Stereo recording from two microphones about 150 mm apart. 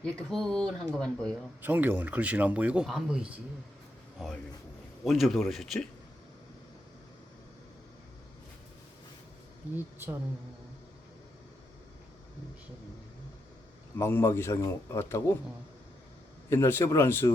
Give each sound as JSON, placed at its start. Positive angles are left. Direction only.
{"t": 0.0, "sound": "speech", "side_deg": 5}
{"t": 1.6, "sound": "speech", "side_deg": -10}
{"t": 9.7, "sound": "speech", "side_deg": -15}
{"t": 13.9, "sound": "speech", "side_deg": 15}
{"t": 16.5, "sound": "speech", "side_deg": 15}